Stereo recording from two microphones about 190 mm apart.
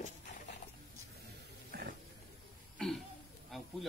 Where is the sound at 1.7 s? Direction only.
50° right (ahead or behind).